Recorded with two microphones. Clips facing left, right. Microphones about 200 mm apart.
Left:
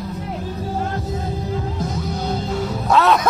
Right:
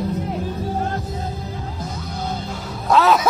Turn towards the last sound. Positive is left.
turn(degrees=0)  # may be behind; listen again after turning